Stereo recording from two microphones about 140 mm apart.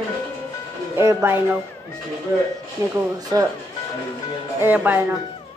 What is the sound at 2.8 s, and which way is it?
Speech, 20° right (ahead or behind).